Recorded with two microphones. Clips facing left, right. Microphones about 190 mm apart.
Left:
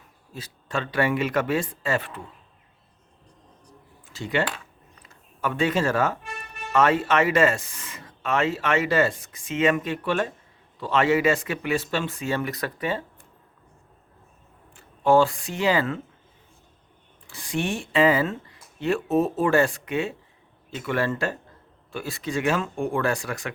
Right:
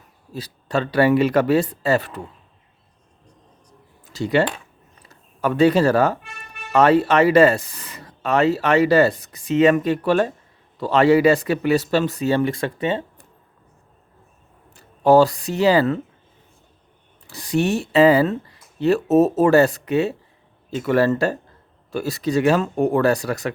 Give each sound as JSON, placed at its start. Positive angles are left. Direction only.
{"t": 0.3, "sound": "speech", "side_deg": -35}
{"t": 4.0, "sound": "a sound", "side_deg": -40}
{"t": 5.0, "sound": "speech", "side_deg": -35}
{"t": 14.8, "sound": "speech", "side_deg": -40}
{"t": 17.2, "sound": "speech", "side_deg": -40}